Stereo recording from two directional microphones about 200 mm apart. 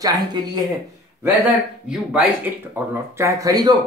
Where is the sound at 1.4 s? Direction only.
5° right (ahead or behind).